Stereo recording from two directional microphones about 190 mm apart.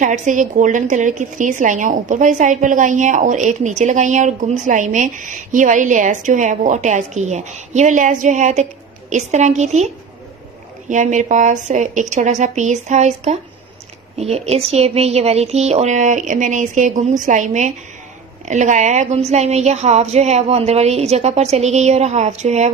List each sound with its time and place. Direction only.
0.0 s speech: 40° right (ahead or behind)
10.9 s speech: 40° right (ahead or behind)